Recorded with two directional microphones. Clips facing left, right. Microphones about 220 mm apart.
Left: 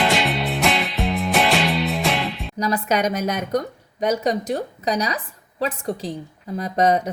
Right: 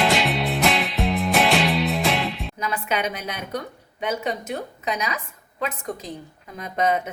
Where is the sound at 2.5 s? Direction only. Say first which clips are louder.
Left 7 dB; 35° left (ahead or behind).